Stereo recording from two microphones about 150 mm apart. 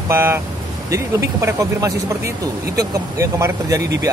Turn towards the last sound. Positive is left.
turn(degrees=-20)  # may be behind; listen again after turning